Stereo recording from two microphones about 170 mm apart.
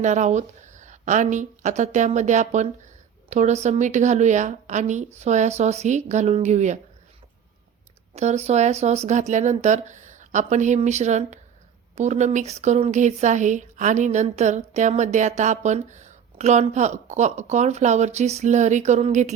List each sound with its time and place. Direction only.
0.0 s speech: 45° right (ahead or behind)
8.1 s speech: 40° right (ahead or behind)